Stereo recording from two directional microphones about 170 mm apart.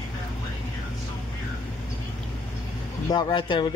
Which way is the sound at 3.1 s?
30° left (ahead or behind).